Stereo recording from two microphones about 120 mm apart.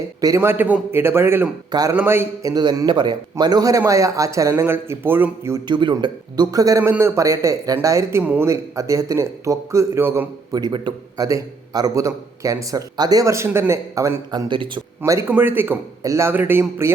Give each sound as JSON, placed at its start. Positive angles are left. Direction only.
{"t": 0.2, "sound": "a man's voice", "side_deg": -25}
{"t": 5.6, "sound": "a man's voice", "side_deg": -40}
{"t": 8.2, "sound": "speech", "side_deg": -10}
{"t": 8.4, "sound": "a man's voice", "side_deg": -25}
{"t": 10.5, "sound": "a man's voice", "side_deg": -40}
{"t": 14.3, "sound": "a man's voice", "side_deg": -40}
{"t": 15.3, "sound": "speech", "side_deg": -15}